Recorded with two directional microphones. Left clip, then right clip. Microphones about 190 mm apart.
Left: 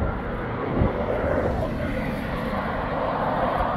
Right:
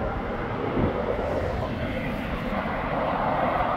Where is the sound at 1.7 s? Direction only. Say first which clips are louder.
Left 2 dB; 60° left (ahead or behind); by 3.7 s 35° left (ahead or behind).